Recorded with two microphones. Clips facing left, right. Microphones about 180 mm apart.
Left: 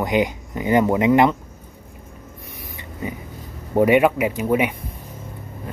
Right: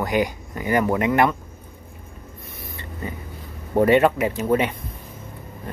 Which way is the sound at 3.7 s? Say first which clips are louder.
Left 1 dB; 10° left (ahead or behind).